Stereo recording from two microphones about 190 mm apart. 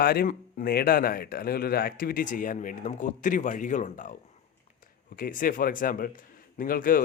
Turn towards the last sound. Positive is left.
turn(degrees=50)  # may be behind; listen again after turning